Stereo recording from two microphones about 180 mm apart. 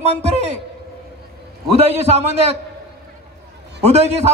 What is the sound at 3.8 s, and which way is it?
Speech, 35° right (ahead or behind).